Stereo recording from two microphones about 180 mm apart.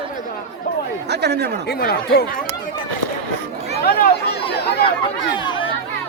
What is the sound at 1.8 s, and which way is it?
Speech, 60° left (ahead or behind).